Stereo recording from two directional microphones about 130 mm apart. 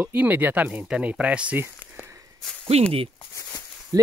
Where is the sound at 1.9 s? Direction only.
15° right (ahead or behind).